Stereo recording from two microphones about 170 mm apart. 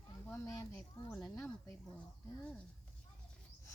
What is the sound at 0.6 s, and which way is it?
Speech, 15° left (ahead or behind).